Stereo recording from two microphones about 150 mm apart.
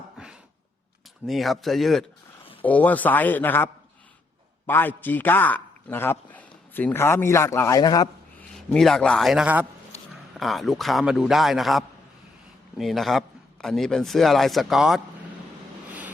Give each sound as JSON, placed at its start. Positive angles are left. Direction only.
{"t": 1.3, "sound": "a man's voice", "side_deg": 0}
{"t": 8.4, "sound": "a man's voice", "side_deg": 5}
{"t": 15.9, "sound": "vehicle", "side_deg": -10}